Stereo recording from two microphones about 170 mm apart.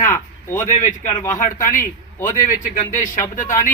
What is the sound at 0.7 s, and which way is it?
Speech, 45° left (ahead or behind).